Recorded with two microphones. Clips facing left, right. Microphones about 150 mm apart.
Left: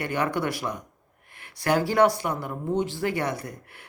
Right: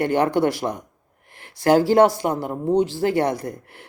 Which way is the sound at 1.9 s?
35° right (ahead or behind).